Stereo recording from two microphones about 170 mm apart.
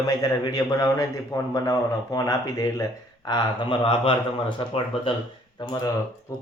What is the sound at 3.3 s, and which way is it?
Speech, 30° left (ahead or behind).